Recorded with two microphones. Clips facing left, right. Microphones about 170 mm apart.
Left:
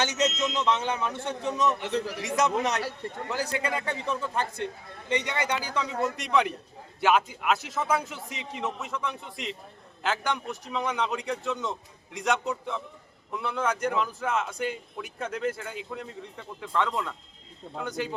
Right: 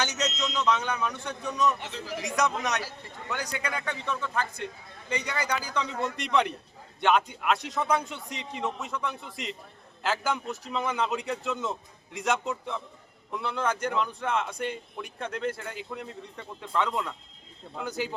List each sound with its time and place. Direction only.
0.0 s speech: 25° left (ahead or behind)
1.8 s speech: 65° left (ahead or behind)
2.2 s speech: 25° left (ahead or behind)
5.7 s speech: 5° left (ahead or behind)